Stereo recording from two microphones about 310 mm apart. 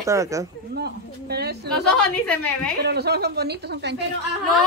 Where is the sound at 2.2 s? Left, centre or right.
Centre.